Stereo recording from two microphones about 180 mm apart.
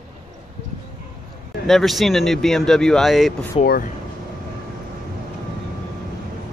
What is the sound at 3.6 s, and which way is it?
Speech, 60° left (ahead or behind).